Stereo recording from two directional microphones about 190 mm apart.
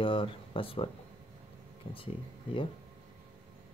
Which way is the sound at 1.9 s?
30° left (ahead or behind).